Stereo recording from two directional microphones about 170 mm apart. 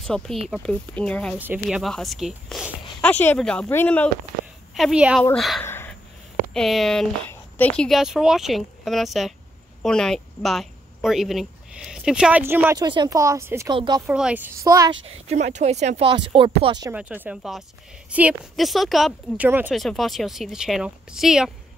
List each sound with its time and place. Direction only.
0.0 s speech: 5° left (ahead or behind)
1.4 s a woman's voice: 10° right (ahead or behind)
1.8 s speech: centre (ahead or behind)
4.7 s speech: 5° right (ahead or behind)
5.6 s a sound: 15° left (ahead or behind)
6.5 s speech: centre (ahead or behind)
12.7 s speech: 25° right (ahead or behind)
14.0 s a woman's voice: 5° right (ahead or behind)
15.0 s speech: 40° right (ahead or behind)
16.9 s a woman's voice: 10° right (ahead or behind)
19.7 s speech: centre (ahead or behind)